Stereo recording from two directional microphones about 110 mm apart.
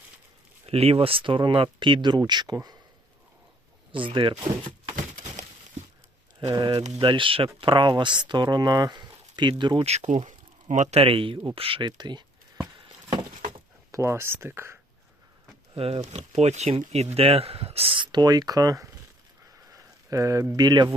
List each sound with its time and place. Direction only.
0.6 s speech: 65° right (ahead or behind); by 2.6 s 40° right (ahead or behind)
3.9 s speech: 50° right (ahead or behind)
6.5 s speech: 40° right (ahead or behind)
7.0 s speech: 50° right (ahead or behind)
9.8 s speech: 75° right (ahead or behind)
10.2 s speech: 90° right; by 11.9 s 55° right (ahead or behind)
11.9 s a sound: 40° right (ahead or behind)
13.9 s speech: 25° right (ahead or behind)
15.7 s speech: 70° right (ahead or behind); by 18.9 s 35° right (ahead or behind)
19.7 s a sound: 30° right (ahead or behind)
20.6 s speech: 40° right (ahead or behind)